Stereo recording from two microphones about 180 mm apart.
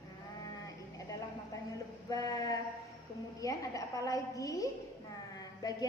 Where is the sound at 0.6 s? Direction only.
20° left (ahead or behind).